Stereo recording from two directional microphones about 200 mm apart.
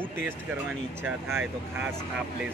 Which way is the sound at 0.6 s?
10° right (ahead or behind).